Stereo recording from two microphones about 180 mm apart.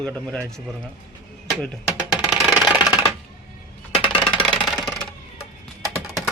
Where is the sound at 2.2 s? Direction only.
5° right (ahead or behind).